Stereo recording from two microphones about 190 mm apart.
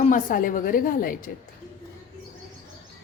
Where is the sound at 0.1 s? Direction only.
45° left (ahead or behind).